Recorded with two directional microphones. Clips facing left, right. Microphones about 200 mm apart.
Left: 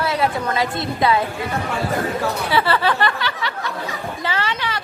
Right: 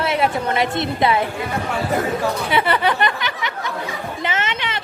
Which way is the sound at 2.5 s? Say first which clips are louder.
Left 1 dB; 20° right (ahead or behind).